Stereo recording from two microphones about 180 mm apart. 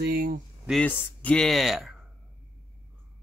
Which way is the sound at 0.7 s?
5° left (ahead or behind).